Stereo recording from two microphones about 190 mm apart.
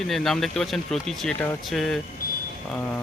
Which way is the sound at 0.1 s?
Centre (ahead or behind).